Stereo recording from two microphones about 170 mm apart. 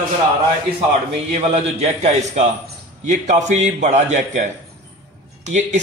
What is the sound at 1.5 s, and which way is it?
A man's voice, 40° right (ahead or behind).